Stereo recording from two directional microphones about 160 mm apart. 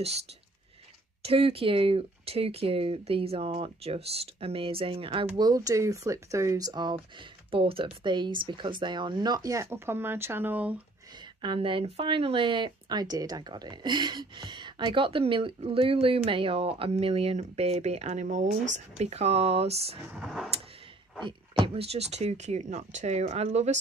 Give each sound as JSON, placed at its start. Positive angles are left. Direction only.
{"t": 1.2, "sound": "speech", "side_deg": -35}
{"t": 11.4, "sound": "speech", "side_deg": -30}
{"t": 20.1, "sound": "a sound", "side_deg": -5}
{"t": 21.2, "sound": "speech", "side_deg": -30}